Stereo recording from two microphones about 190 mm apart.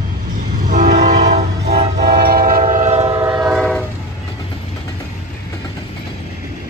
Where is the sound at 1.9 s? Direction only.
55° right (ahead or behind).